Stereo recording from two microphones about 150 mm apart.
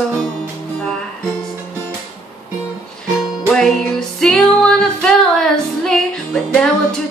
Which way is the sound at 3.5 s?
5° left (ahead or behind).